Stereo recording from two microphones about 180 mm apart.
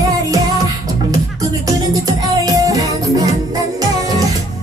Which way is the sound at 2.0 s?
20° right (ahead or behind).